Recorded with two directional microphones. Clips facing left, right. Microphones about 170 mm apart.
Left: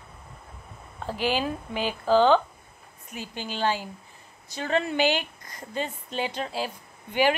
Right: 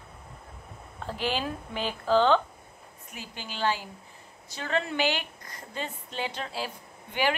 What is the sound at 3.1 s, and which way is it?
A woman's voice, 20° left (ahead or behind).